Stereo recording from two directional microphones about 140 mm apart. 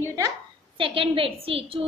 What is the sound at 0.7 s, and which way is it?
A woman's voice, 40° right (ahead or behind).